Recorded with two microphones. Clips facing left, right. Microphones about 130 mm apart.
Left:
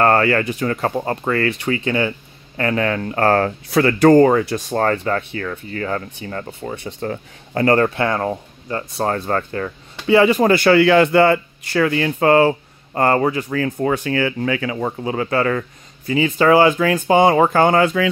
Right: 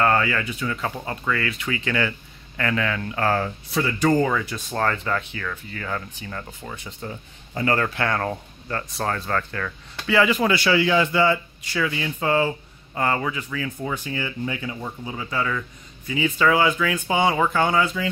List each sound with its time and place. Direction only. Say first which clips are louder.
0.0 s speech: left 6 dB; 45° left (ahead or behind)
1.6 s speech: left 5 dB; 30° left (ahead or behind)
7.0 s speech: left 9 dB; 70° left (ahead or behind)
7.6 s speech: left 7 dB; 35° left (ahead or behind); by 13.0 s 60° left (ahead or behind)
13.0 s speech: left 8 dB; 45° left (ahead or behind); by 18.0 s 60° left (ahead or behind)